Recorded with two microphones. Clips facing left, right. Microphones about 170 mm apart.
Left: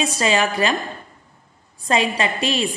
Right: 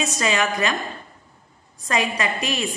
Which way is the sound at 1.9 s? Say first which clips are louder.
Left 3 dB; 30° left (ahead or behind).